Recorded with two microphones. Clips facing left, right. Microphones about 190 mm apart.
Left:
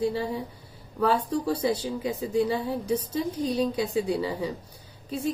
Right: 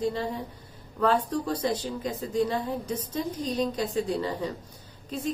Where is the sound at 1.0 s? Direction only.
10° left (ahead or behind).